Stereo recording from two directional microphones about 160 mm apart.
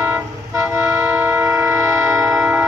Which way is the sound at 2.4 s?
10° right (ahead or behind).